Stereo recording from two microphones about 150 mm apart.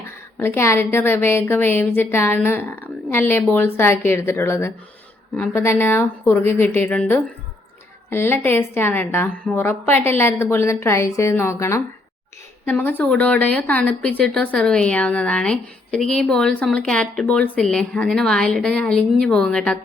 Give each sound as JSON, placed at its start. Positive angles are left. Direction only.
{"t": 0.0, "sound": "speech", "side_deg": 15}